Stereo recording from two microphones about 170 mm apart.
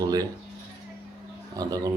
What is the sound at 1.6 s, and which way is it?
Speech, 20° right (ahead or behind).